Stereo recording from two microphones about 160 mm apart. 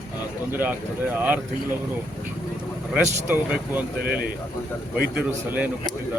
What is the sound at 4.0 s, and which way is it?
Speech, 70° right (ahead or behind).